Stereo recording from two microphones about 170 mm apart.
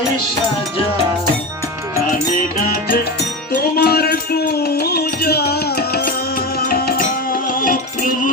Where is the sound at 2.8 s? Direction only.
55° left (ahead or behind).